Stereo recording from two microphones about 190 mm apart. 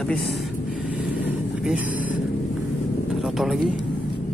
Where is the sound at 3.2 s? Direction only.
Centre (ahead or behind).